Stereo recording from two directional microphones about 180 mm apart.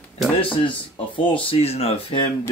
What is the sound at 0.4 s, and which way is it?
Speech, 30° left (ahead or behind).